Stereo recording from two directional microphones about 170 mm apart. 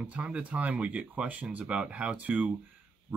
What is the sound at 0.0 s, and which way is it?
Speech, 5° right (ahead or behind).